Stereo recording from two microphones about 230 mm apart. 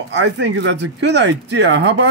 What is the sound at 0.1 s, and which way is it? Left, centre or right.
Speech, right.